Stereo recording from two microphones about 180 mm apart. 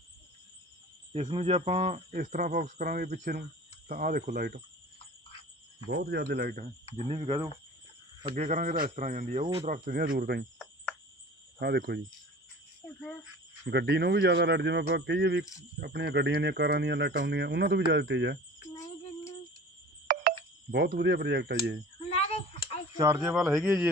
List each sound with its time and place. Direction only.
1.1 s speech: 35° right (ahead or behind)
2.1 s speech: 50° right (ahead or behind)
5.9 s speech: 60° right (ahead or behind)
6.9 s speech: 40° right (ahead or behind)
9.6 s speech: 50° right (ahead or behind)
11.6 s speech: 65° right (ahead or behind)
13.7 s speech: 65° right (ahead or behind)
20.1 s a sound: 55° right (ahead or behind)
23.0 s speech: 20° right (ahead or behind)
23.2 s a man's voice: centre (ahead or behind)
23.6 s a man's voice: 10° right (ahead or behind)